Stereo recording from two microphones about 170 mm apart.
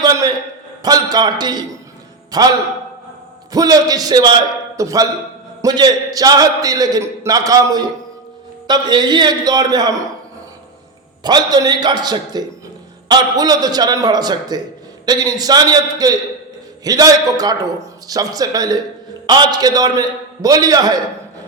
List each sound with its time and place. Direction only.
0.0 s a sound: 20° right (ahead or behind)
0.8 s a man's voice: 25° right (ahead or behind)
3.5 s a man's voice: 20° right (ahead or behind)
11.2 s a man's voice: 25° right (ahead or behind)